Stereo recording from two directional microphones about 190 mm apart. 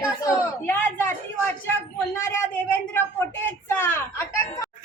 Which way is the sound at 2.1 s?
15° left (ahead or behind).